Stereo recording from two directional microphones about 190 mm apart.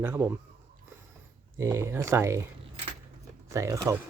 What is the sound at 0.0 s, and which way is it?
Speech, 10° right (ahead or behind).